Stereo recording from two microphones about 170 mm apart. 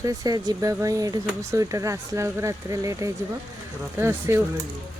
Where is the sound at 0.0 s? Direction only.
20° right (ahead or behind).